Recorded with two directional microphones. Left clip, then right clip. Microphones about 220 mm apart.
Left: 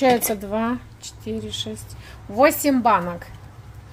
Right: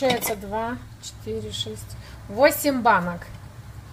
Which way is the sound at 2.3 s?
30° left (ahead or behind).